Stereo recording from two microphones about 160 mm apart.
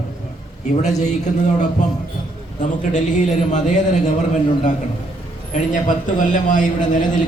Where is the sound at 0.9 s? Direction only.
45° left (ahead or behind).